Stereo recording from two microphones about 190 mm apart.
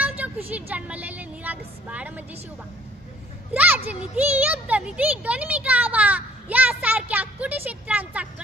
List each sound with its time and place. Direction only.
0.0 s speech: 10° right (ahead or behind)
3.5 s speech: 10° right (ahead or behind)